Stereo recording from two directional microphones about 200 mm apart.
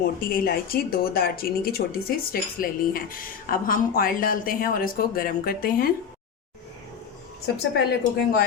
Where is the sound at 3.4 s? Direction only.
45° left (ahead or behind).